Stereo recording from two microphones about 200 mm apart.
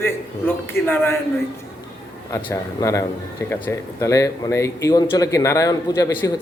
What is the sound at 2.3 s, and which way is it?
Speech, 15° left (ahead or behind).